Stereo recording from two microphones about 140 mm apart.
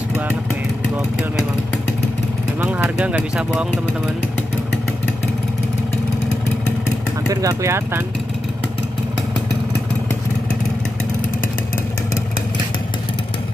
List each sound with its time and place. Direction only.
2.6 s speech: 15° right (ahead or behind)
7.2 s speech: 20° right (ahead or behind)